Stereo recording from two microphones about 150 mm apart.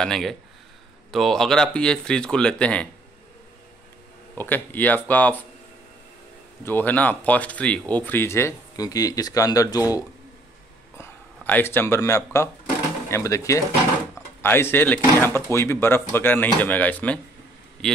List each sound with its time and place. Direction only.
0.0 s speech: centre (ahead or behind)
4.4 s speech: 15° left (ahead or behind)
6.6 s speech: 10° left (ahead or behind)